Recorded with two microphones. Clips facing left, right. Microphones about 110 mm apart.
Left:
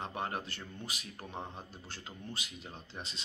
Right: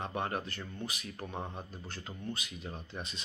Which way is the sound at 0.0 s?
35° right (ahead or behind).